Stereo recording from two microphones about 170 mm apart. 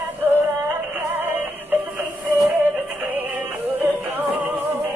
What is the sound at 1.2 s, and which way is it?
Music, 10° right (ahead or behind).